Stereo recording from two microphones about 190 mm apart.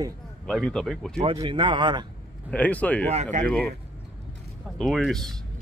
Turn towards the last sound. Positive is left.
turn(degrees=0)  # may be behind; listen again after turning